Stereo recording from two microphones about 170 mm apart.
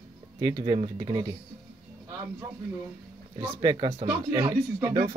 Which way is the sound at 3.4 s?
25° right (ahead or behind).